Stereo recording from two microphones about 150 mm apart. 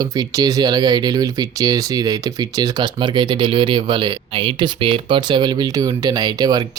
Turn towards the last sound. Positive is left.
turn(degrees=-25)  # may be behind; listen again after turning